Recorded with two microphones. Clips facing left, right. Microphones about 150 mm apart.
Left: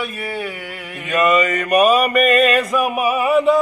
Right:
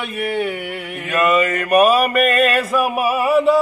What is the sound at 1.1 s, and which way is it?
Mantra, centre (ahead or behind).